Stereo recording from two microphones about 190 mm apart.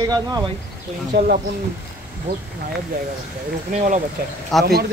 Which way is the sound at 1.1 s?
60° right (ahead or behind).